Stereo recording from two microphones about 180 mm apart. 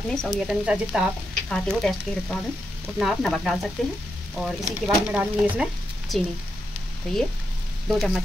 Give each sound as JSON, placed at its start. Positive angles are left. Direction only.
{"t": 0.1, "sound": "speech", "side_deg": -5}
{"t": 7.9, "sound": "speech", "side_deg": 0}